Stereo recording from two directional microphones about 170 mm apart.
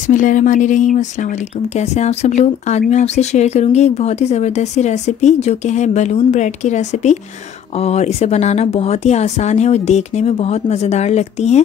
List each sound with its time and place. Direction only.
0.0 s speech: 50° left (ahead or behind)